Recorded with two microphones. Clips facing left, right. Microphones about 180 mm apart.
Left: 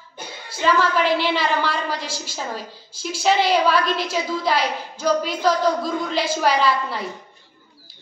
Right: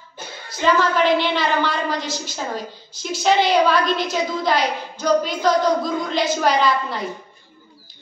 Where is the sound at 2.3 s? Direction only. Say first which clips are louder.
Right 2 dB; 5° left (ahead or behind).